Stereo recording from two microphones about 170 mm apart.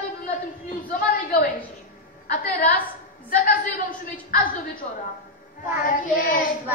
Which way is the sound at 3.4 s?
50° left (ahead or behind).